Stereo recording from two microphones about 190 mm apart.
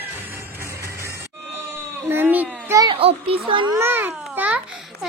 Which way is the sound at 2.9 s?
30° right (ahead or behind).